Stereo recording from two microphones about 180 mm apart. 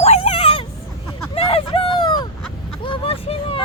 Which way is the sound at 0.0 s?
35° left (ahead or behind).